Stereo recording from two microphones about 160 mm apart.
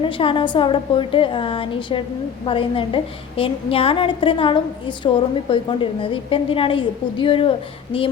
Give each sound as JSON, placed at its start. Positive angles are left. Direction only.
{"t": 0.0, "sound": "a woman's voice", "side_deg": 30}